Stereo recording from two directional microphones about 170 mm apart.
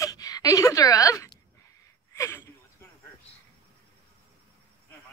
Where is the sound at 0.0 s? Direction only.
20° left (ahead or behind).